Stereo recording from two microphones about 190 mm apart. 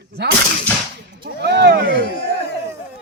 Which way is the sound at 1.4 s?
60° right (ahead or behind).